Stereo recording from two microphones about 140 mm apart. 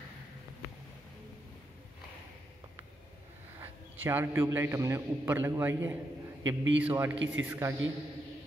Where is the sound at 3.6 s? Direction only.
15° right (ahead or behind).